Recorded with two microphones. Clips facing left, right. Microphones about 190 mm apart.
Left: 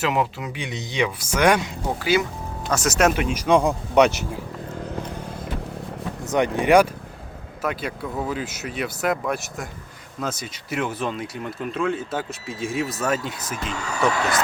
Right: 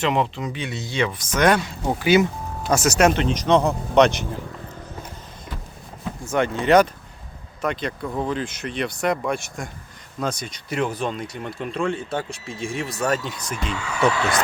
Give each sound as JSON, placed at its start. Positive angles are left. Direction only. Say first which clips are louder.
{"t": 0.0, "sound": "speech", "louder": "right 1 dB", "side_deg": 5}
{"t": 2.0, "sound": "speech", "louder": "right 4 dB", "side_deg": -20}
{"t": 2.7, "sound": "speech", "louder": "right 2 dB", "side_deg": 0}
{"t": 6.2, "sound": "speech", "louder": "left 1 dB", "side_deg": 15}
{"t": 13.7, "sound": "speech", "louder": "even", "side_deg": 40}